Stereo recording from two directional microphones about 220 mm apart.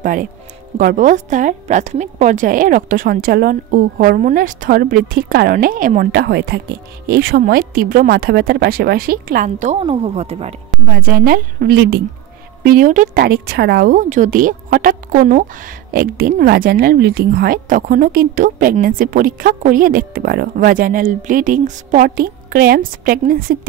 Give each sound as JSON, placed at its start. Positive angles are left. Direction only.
{"t": 0.0, "sound": "speech", "side_deg": -40}
{"t": 10.9, "sound": "a woman's voice", "side_deg": -40}